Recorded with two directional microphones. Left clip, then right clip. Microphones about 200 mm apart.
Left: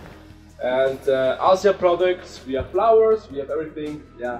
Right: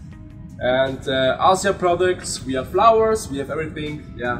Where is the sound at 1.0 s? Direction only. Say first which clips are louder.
Right 2 dB; 30° left (ahead or behind).